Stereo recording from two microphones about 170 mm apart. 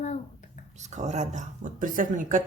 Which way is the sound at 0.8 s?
45° right (ahead or behind).